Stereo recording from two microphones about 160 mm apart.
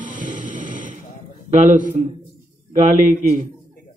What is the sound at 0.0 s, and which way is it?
Music, 50° right (ahead or behind).